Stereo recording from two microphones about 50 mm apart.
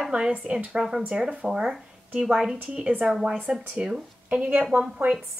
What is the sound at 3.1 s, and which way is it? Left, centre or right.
Speech, centre.